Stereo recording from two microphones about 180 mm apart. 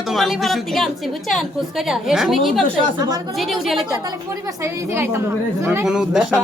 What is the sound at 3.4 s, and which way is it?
Speech, centre (ahead or behind).